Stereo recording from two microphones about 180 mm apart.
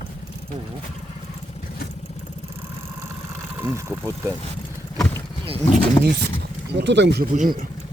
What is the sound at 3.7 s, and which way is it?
Speech, 15° right (ahead or behind).